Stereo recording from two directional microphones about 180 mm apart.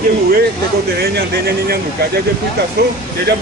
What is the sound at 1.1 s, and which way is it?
Speech, 60° right (ahead or behind).